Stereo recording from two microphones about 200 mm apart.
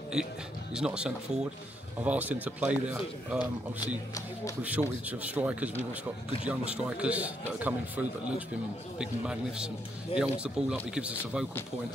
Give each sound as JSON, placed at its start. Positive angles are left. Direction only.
{"t": 0.7, "sound": "a man's voice", "side_deg": -5}
{"t": 4.6, "sound": "a man's voice", "side_deg": -5}